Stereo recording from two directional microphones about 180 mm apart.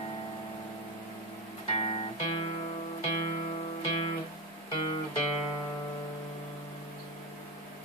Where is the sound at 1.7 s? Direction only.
30° left (ahead or behind).